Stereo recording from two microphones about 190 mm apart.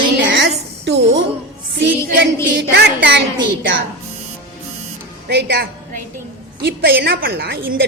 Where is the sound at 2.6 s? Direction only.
60° right (ahead or behind).